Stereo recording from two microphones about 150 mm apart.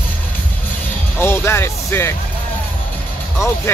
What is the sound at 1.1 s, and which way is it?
Speech, 15° left (ahead or behind).